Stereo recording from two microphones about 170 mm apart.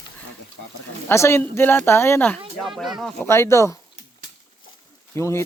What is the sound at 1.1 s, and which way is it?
Speech, 15° left (ahead or behind).